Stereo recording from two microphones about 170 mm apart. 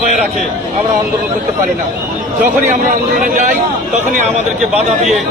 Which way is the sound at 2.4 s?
50° right (ahead or behind).